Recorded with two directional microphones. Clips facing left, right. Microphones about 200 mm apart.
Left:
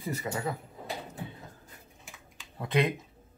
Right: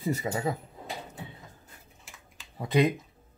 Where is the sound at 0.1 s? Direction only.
25° right (ahead or behind).